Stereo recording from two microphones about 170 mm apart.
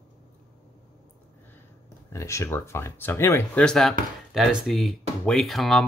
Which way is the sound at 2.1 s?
15° left (ahead or behind).